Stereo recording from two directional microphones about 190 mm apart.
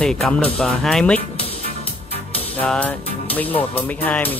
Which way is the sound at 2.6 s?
10° left (ahead or behind).